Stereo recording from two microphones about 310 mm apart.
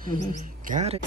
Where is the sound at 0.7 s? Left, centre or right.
Right.